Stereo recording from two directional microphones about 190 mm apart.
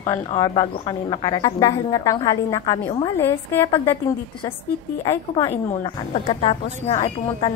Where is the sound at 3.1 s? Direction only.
10° left (ahead or behind).